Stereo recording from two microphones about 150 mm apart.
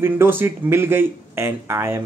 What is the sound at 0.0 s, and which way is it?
Speech, 15° right (ahead or behind).